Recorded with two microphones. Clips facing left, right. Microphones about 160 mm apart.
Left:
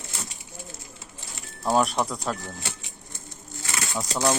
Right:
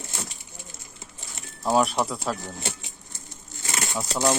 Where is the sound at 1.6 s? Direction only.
Centre (ahead or behind).